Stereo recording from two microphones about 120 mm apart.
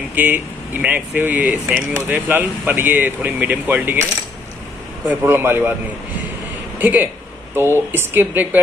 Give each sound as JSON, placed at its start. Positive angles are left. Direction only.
{"t": 0.1, "sound": "speech", "side_deg": -15}
{"t": 5.0, "sound": "speech", "side_deg": -20}
{"t": 6.8, "sound": "speech", "side_deg": -15}